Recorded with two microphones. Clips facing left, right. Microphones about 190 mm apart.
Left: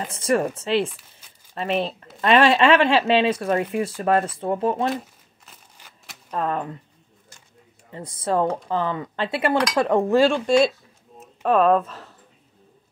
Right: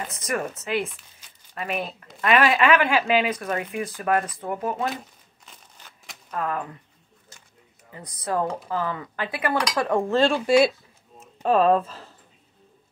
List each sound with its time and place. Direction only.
0.1 s speech: 30° left (ahead or behind)
5.4 s a sound: 5° left (ahead or behind)
6.3 s speech: 30° left (ahead or behind)
7.9 s speech: 25° left (ahead or behind)
10.2 s speech: 5° right (ahead or behind)